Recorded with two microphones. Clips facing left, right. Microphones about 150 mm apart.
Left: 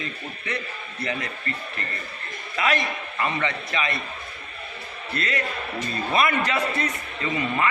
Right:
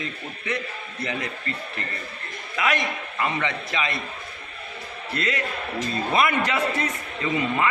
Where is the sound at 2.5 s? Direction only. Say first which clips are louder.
Even; 10° right (ahead or behind).